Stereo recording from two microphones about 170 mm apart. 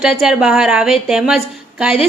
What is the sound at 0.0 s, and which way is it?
A woman's voice, 5° right (ahead or behind).